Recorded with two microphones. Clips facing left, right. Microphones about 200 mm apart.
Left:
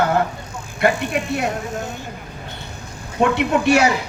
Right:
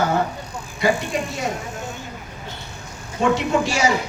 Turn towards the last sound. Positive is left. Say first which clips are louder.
# left 4 dB
turn(degrees=60)  # may be behind; listen again after turning